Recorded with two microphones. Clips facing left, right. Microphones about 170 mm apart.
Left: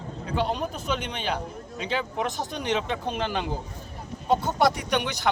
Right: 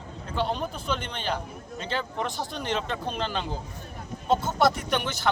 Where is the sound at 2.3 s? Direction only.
15° left (ahead or behind).